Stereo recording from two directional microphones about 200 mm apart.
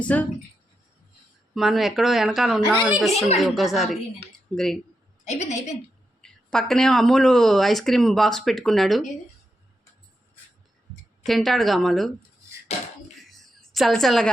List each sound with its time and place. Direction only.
0.0 s speech: 10° left (ahead or behind)
1.5 s speech: centre (ahead or behind)
3.1 s a woman's voice: 30° left (ahead or behind)
3.3 s speech: centre (ahead or behind)
5.2 s a woman's voice: 35° left (ahead or behind)
6.2 s speech: 5° left (ahead or behind)
11.3 s speech: centre (ahead or behind)
12.7 s a woman's voice: 35° left (ahead or behind)
13.2 s a sound: centre (ahead or behind)